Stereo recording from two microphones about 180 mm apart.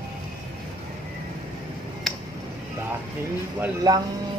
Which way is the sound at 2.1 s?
Centre (ahead or behind).